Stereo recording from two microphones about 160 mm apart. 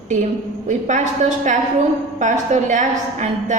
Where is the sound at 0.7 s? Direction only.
50° right (ahead or behind).